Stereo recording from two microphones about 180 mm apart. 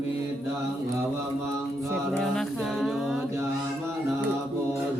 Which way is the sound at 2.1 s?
5° left (ahead or behind).